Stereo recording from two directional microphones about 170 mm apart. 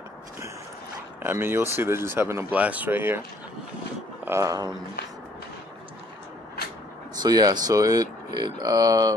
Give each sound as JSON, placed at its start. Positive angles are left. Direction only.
{"t": 1.2, "sound": "speech", "side_deg": -15}
{"t": 4.2, "sound": "speech", "side_deg": -15}
{"t": 7.2, "sound": "speech", "side_deg": -25}